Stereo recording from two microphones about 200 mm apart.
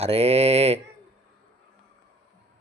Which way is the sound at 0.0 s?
30° right (ahead or behind).